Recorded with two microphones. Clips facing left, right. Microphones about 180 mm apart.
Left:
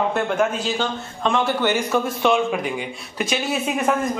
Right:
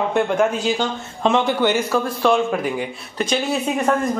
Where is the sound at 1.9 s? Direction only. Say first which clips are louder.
Right 1 dB; centre (ahead or behind).